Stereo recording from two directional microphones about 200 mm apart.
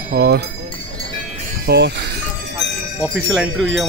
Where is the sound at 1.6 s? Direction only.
55° right (ahead or behind).